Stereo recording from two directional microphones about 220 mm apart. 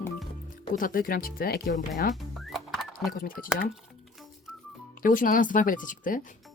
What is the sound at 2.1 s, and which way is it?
Music, centre (ahead or behind).